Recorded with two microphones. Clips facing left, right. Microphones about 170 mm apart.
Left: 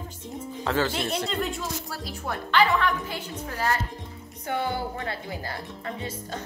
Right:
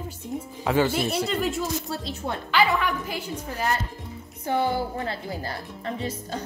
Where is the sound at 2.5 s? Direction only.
10° right (ahead or behind).